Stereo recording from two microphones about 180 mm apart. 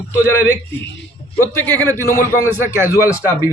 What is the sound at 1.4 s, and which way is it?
A man's voice, 10° left (ahead or behind).